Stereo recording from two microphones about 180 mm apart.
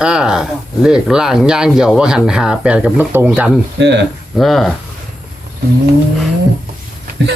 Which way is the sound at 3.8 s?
70° right (ahead or behind).